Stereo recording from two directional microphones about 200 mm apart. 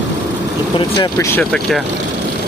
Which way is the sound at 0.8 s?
20° left (ahead or behind).